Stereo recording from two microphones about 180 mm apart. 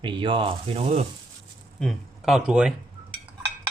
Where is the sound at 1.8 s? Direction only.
Centre (ahead or behind).